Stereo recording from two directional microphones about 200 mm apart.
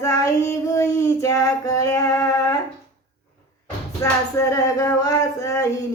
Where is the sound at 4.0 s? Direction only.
15° left (ahead or behind).